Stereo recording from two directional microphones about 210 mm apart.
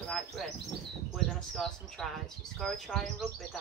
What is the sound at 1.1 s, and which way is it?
Speech, centre (ahead or behind).